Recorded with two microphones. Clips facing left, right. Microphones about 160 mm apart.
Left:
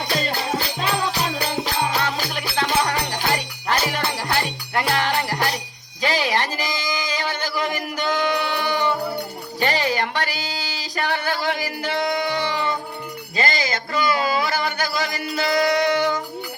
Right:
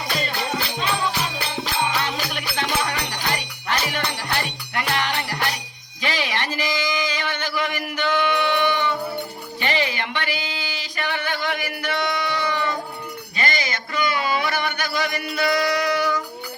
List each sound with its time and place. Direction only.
1.4 s music: 35° left (ahead or behind)